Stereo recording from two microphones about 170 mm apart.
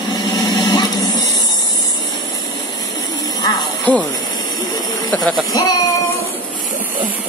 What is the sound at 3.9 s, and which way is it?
Speech, 10° left (ahead or behind).